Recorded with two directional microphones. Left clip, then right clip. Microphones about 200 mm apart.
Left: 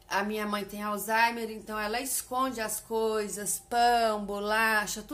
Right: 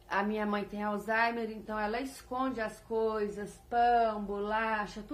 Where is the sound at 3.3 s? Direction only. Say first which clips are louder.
Left 2 dB; 35° left (ahead or behind).